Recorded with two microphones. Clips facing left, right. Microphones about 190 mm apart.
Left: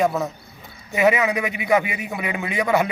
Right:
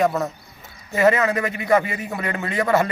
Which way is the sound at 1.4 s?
15° left (ahead or behind).